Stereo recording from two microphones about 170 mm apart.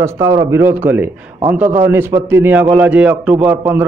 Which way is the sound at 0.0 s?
15° right (ahead or behind).